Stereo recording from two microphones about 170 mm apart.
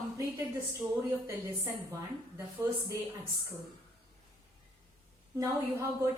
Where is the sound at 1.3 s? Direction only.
15° right (ahead or behind).